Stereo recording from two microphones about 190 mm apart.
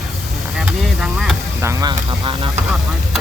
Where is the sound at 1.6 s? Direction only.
15° right (ahead or behind).